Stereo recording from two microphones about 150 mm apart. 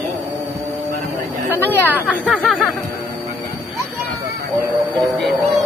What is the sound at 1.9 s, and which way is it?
Speech, 10° right (ahead or behind).